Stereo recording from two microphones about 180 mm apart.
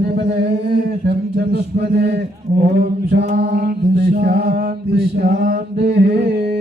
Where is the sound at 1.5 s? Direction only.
65° right (ahead or behind).